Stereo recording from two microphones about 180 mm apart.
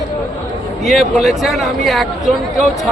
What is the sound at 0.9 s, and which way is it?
Speech, centre (ahead or behind).